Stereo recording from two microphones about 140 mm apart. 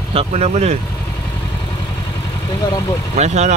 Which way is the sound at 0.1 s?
45° right (ahead or behind).